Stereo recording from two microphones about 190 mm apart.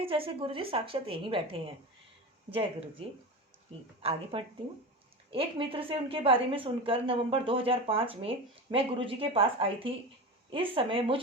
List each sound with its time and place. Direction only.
0.0 s a woman's voice: 30° right (ahead or behind)
3.7 s a woman's voice: 30° right (ahead or behind)